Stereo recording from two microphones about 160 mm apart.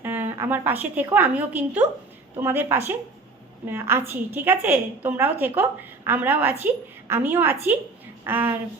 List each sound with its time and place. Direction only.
0.0 s a woman's voice: 15° right (ahead or behind)